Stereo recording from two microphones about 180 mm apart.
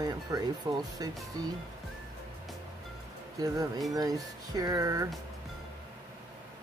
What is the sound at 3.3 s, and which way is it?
Speech, 20° right (ahead or behind).